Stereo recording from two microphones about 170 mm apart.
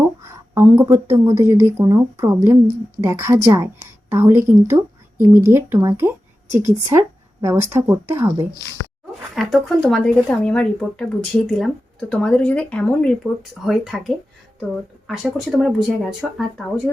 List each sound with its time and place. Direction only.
0.2 s a woman's voice: 15° right (ahead or behind)
9.3 s speech: centre (ahead or behind)